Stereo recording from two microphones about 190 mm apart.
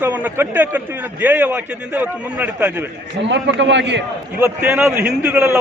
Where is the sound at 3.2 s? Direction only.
70° right (ahead or behind).